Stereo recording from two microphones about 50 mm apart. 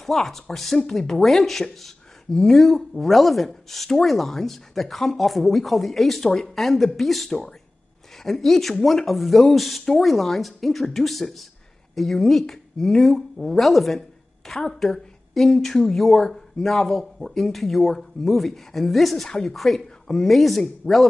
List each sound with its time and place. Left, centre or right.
0.0 s speech: centre
20.8 s speech: centre